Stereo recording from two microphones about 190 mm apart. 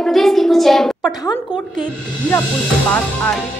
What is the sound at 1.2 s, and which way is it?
Speech, 20° left (ahead or behind).